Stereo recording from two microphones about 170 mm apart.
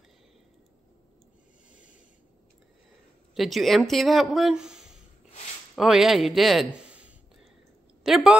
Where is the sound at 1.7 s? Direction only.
5° right (ahead or behind).